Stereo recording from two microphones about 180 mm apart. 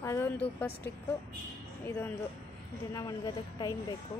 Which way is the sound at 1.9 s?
15° left (ahead or behind).